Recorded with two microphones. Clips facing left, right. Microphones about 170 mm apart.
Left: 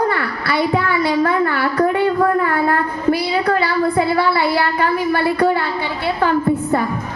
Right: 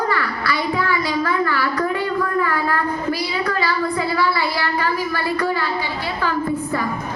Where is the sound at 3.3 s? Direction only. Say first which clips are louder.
Left 5 dB; 55° left (ahead or behind).